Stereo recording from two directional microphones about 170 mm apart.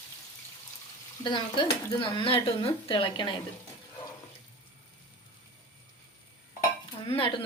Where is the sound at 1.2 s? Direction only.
30° left (ahead or behind).